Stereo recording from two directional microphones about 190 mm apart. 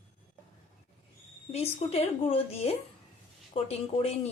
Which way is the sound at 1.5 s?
35° left (ahead or behind).